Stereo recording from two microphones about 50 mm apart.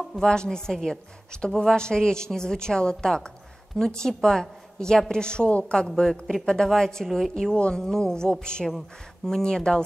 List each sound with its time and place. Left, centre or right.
0.2 s a woman's voice: centre
7.1 s a woman's voice: centre
7.5 s a woman's voice: left